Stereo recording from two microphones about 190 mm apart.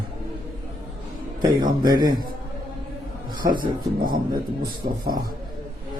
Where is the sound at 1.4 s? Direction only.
20° right (ahead or behind).